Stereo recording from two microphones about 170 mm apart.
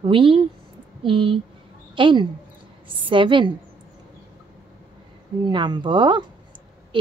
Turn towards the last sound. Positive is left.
turn(degrees=-30)  # may be behind; listen again after turning